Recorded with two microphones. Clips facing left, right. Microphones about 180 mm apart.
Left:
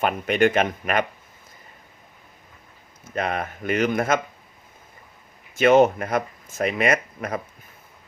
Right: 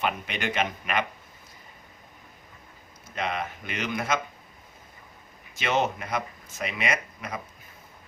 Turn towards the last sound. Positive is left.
turn(degrees=50)  # may be behind; listen again after turning